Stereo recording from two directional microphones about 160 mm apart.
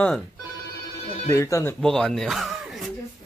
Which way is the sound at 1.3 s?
20° left (ahead or behind).